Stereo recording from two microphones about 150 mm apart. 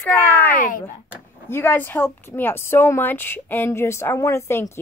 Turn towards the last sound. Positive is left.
turn(degrees=15)  # may be behind; listen again after turning